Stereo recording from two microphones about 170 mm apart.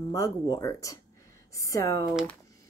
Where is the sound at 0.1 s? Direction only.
20° left (ahead or behind).